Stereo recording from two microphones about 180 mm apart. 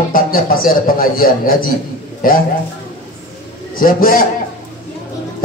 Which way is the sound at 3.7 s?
50° left (ahead or behind).